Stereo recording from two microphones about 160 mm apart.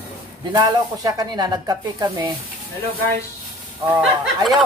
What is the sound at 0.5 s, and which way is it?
A man's voice, 25° right (ahead or behind).